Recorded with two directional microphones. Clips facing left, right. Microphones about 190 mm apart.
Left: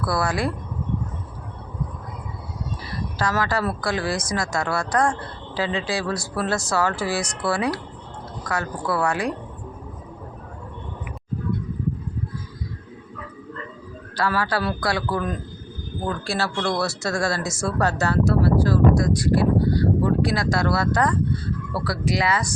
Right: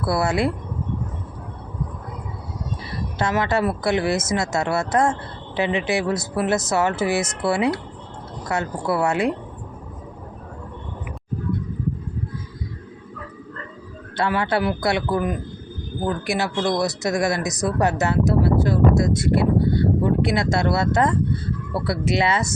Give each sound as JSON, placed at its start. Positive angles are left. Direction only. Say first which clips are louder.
{"t": 0.0, "sound": "speech", "louder": "right 3 dB", "side_deg": -25}
{"t": 3.2, "sound": "speech", "louder": "right 3 dB", "side_deg": -25}
{"t": 14.2, "sound": "speech", "louder": "right 2 dB", "side_deg": -25}